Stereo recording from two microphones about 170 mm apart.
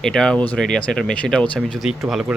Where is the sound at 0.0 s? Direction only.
5° left (ahead or behind).